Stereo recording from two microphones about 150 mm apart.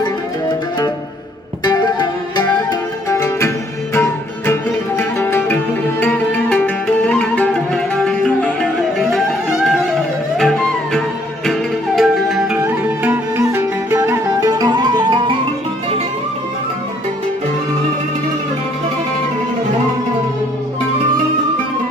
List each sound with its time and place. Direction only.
1.6 s music: 30° left (ahead or behind); by 12.4 s centre (ahead or behind)
12.6 s music: 15° right (ahead or behind); by 15.3 s 30° right (ahead or behind)